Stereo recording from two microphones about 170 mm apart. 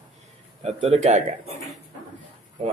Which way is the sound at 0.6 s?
40° right (ahead or behind).